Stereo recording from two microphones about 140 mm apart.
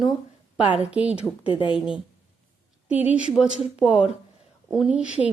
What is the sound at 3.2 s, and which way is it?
A woman's voice, 5° right (ahead or behind).